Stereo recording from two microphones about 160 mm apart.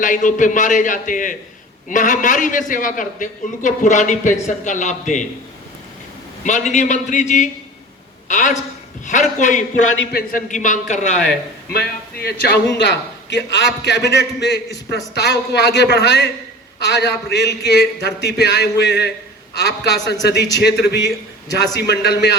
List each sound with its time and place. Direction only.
0.0 s a man's voice: 55° left (ahead or behind)
6.4 s a man's voice: 50° left (ahead or behind)
10.1 s a man's voice: 60° left (ahead or behind)
11.7 s a man's voice: 85° left